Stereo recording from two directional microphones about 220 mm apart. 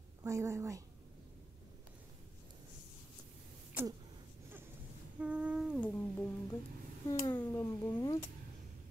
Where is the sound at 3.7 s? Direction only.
10° right (ahead or behind).